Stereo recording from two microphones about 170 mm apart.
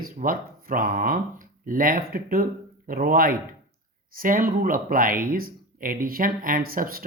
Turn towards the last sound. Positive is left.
turn(degrees=-60)  # may be behind; listen again after turning